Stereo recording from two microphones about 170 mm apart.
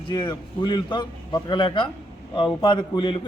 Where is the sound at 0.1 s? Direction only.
25° left (ahead or behind).